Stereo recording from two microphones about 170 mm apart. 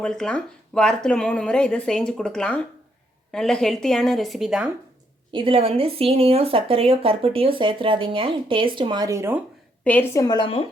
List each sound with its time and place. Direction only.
0.0 s speech: 5° left (ahead or behind)
5.3 s speech: 30° right (ahead or behind)
9.8 s a woman's voice: 10° left (ahead or behind)
10.2 s speech: 30° left (ahead or behind)